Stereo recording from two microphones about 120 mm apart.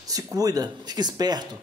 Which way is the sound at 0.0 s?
30° right (ahead or behind).